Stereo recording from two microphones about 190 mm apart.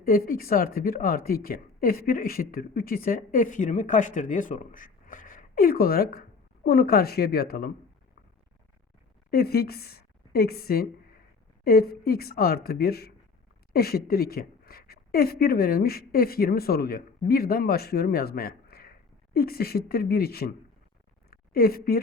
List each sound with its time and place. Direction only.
0.0 s speech: 50° left (ahead or behind)
9.3 s a woman's voice: 55° left (ahead or behind)
21.2 s a sound: 50° left (ahead or behind)